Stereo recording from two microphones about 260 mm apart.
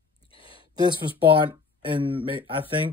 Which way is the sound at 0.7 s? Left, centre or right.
Centre.